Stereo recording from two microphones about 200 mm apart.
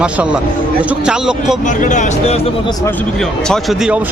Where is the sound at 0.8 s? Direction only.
5° right (ahead or behind).